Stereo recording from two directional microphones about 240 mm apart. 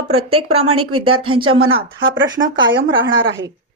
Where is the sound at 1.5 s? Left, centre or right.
Right.